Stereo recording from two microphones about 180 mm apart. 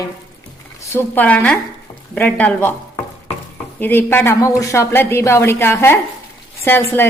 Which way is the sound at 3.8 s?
10° left (ahead or behind).